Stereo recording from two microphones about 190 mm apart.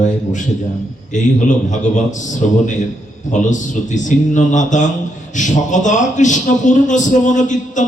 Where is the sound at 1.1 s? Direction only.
40° left (ahead or behind).